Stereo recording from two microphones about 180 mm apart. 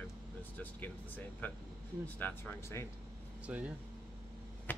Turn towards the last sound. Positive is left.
turn(degrees=10)  # may be behind; listen again after turning